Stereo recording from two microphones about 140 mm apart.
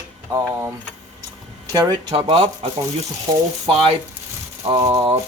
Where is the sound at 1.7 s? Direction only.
30° right (ahead or behind).